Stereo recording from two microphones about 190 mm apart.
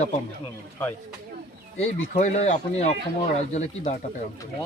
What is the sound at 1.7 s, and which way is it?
Speech, 40° left (ahead or behind).